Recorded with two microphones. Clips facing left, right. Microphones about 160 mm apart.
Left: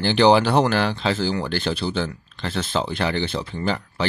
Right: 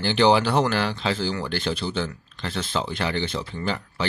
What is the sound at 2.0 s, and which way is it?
Speech, 55° left (ahead or behind).